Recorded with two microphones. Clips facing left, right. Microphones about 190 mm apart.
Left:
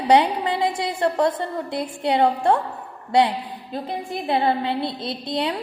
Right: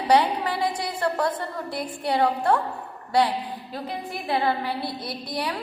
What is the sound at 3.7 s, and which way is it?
A woman's voice, 25° left (ahead or behind).